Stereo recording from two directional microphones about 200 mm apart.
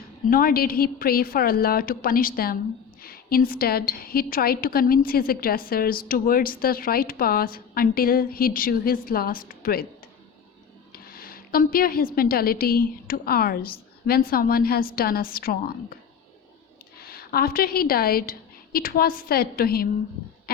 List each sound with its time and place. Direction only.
0.3 s a woman's voice: 45° left (ahead or behind)
10.9 s a woman's voice: 50° left (ahead or behind)
17.0 s a woman's voice: 50° left (ahead or behind)